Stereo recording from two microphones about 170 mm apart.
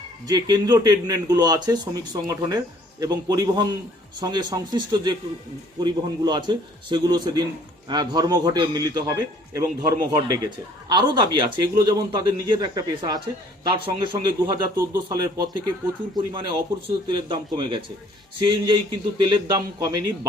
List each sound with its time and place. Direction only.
0.3 s a man's voice: 25° right (ahead or behind)